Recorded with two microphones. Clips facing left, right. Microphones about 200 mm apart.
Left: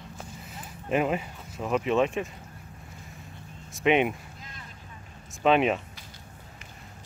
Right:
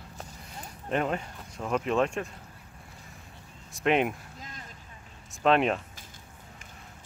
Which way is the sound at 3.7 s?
Centre (ahead or behind).